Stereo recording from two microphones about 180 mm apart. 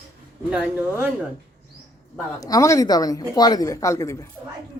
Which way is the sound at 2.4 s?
20° left (ahead or behind).